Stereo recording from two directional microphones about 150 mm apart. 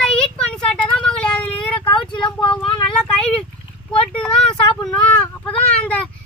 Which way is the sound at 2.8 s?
5° left (ahead or behind).